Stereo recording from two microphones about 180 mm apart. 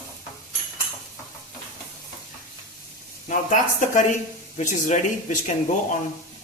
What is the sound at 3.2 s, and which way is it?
Speech, 45° left (ahead or behind).